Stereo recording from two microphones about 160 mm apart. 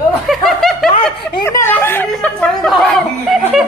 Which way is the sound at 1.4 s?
15° left (ahead or behind).